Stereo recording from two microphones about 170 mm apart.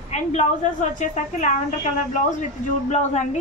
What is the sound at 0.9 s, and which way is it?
Speech, 45° left (ahead or behind).